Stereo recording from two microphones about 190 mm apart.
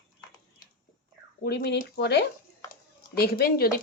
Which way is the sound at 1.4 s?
60° left (ahead or behind).